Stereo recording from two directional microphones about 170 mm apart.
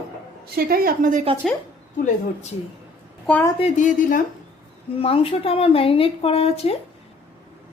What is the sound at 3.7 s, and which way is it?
Speech, 50° left (ahead or behind).